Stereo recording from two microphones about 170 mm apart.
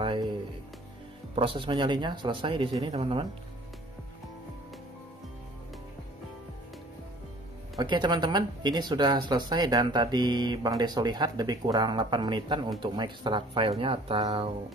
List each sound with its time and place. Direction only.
0.0 s music: 30° right (ahead or behind)
1.3 s speech: 30° right (ahead or behind)
7.7 s speech: 25° right (ahead or behind)